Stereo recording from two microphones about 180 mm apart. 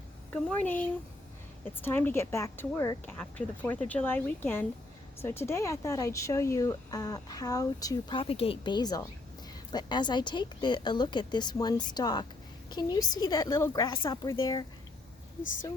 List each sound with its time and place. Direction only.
0.3 s a woman's voice: 5° left (ahead or behind)